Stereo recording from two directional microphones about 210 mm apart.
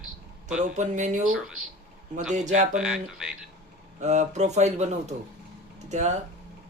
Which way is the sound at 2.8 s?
5° right (ahead or behind).